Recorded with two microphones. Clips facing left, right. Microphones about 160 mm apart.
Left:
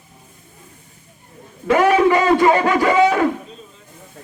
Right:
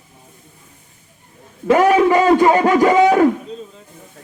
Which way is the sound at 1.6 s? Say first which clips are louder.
Right 2 dB; 40° right (ahead or behind).